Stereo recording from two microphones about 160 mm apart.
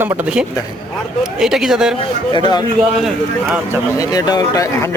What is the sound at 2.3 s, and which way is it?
Speech, 30° left (ahead or behind).